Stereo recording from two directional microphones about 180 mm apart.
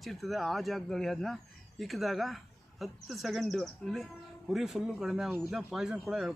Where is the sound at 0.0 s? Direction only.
Centre (ahead or behind).